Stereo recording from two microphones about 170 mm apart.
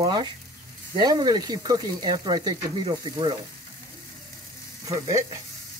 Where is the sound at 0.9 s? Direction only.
25° right (ahead or behind).